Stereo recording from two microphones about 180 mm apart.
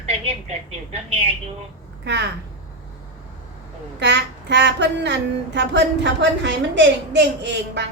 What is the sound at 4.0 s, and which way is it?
A woman's voice, 80° right.